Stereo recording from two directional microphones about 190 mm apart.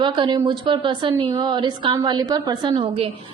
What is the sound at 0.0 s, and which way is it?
A woman's voice, 25° right (ahead or behind).